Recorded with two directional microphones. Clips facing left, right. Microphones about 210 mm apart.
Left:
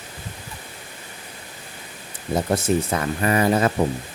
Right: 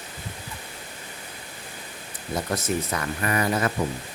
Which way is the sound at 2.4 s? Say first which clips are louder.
Left 6 dB; 30° left (ahead or behind).